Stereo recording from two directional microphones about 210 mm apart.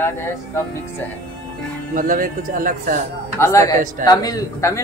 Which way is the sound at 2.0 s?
40° right (ahead or behind).